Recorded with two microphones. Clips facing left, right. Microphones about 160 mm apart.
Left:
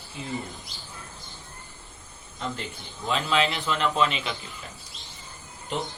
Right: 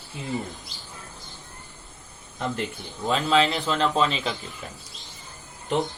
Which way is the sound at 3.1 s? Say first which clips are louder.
Right 4 dB; 35° right (ahead or behind).